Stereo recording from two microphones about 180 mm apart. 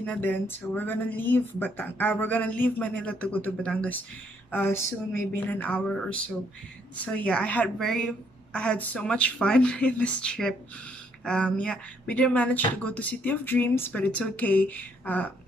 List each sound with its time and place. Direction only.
0.0 s speech: 10° left (ahead or behind)